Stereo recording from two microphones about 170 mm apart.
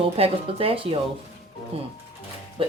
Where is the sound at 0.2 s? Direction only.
35° right (ahead or behind).